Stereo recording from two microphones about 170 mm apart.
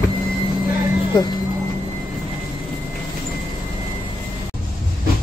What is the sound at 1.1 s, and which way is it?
Speech, 25° left (ahead or behind).